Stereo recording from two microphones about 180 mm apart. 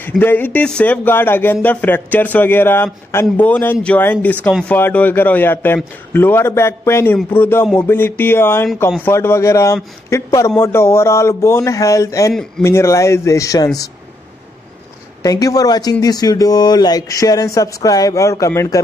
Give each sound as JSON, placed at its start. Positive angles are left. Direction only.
{"t": 0.2, "sound": "speech", "side_deg": 10}
{"t": 15.2, "sound": "speech", "side_deg": 20}